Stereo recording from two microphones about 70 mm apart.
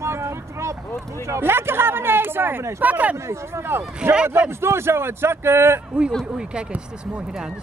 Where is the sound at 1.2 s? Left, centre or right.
Right.